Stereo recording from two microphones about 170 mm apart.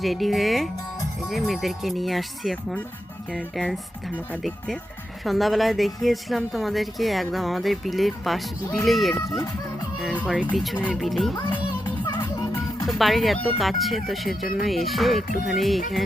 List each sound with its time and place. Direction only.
0.0 s speech: centre (ahead or behind)
10.5 s speech: centre (ahead or behind)
11.3 s music: 15° left (ahead or behind)
12.8 s speech: centre (ahead or behind)